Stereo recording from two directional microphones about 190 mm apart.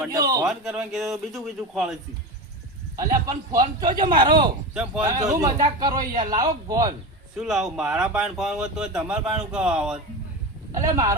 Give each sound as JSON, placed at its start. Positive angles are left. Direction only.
{"t": 0.0, "sound": "speech", "side_deg": -20}
{"t": 0.4, "sound": "speech", "side_deg": -5}
{"t": 2.9, "sound": "speech", "side_deg": -20}
{"t": 6.1, "sound": "a man's voice", "side_deg": -40}
{"t": 6.4, "sound": "speech", "side_deg": -20}
{"t": 7.3, "sound": "speech", "side_deg": 0}
{"t": 10.7, "sound": "speech", "side_deg": -15}